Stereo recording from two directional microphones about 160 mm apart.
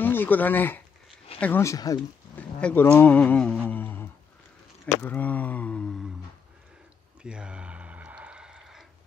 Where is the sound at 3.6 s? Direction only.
10° left (ahead or behind).